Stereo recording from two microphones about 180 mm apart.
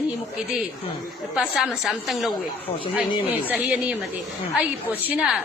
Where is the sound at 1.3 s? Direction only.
5° right (ahead or behind).